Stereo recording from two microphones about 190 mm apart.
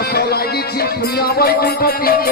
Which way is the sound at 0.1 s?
55° left (ahead or behind).